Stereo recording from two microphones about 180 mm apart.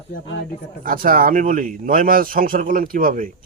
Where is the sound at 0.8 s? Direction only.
50° right (ahead or behind).